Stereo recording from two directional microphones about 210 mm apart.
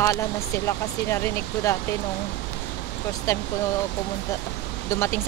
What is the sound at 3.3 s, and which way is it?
Speech, 15° left (ahead or behind).